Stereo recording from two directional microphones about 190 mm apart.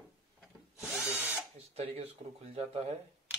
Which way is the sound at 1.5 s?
35° right (ahead or behind).